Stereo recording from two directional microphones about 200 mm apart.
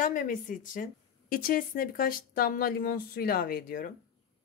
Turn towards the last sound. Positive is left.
turn(degrees=45)  # may be behind; listen again after turning